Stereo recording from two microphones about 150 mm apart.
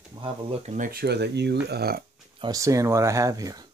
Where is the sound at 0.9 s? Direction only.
90° right.